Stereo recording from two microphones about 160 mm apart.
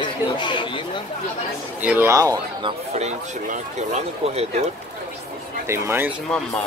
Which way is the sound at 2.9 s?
45° right (ahead or behind).